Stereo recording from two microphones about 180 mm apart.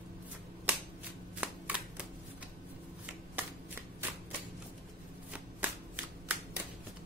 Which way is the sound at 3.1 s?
10° right (ahead or behind).